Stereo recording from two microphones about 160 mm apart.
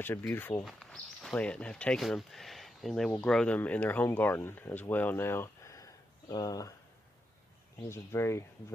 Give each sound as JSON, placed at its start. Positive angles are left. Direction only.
{"t": 0.0, "sound": "speech", "side_deg": 15}
{"t": 0.7, "sound": "speech", "side_deg": 5}
{"t": 7.9, "sound": "speech", "side_deg": 15}